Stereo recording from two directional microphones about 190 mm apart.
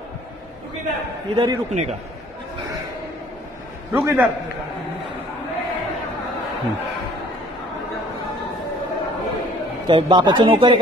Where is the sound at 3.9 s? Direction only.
15° right (ahead or behind).